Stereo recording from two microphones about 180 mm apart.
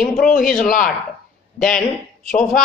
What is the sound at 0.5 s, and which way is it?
Speech, 50° left (ahead or behind).